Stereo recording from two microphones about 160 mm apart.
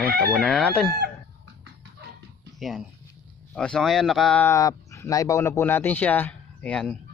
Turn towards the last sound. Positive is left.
turn(degrees=5)  # may be behind; listen again after turning